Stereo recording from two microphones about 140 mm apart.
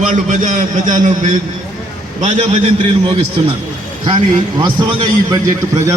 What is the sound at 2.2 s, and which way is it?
Speech, 55° right (ahead or behind).